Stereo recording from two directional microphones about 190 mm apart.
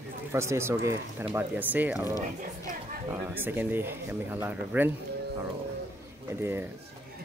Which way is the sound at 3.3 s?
10° right (ahead or behind).